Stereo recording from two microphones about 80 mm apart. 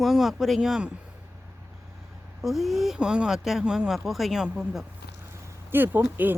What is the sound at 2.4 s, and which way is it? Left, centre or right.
Speech, centre.